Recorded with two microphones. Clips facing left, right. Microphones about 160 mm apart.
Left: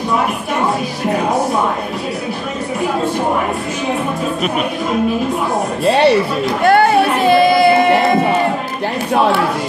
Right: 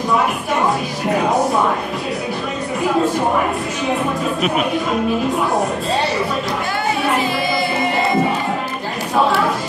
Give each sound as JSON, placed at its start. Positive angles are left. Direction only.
{"t": 5.9, "sound": "speech", "side_deg": 70}
{"t": 6.6, "sound": "music", "side_deg": 65}